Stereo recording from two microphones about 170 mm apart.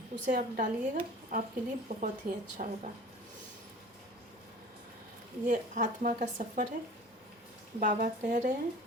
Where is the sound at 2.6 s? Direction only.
45° right (ahead or behind).